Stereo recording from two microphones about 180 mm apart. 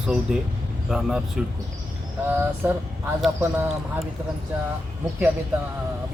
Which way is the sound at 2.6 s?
10° right (ahead or behind).